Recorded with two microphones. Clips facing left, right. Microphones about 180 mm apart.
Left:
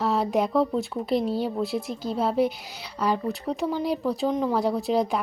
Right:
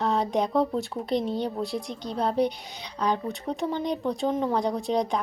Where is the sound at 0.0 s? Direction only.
5° left (ahead or behind).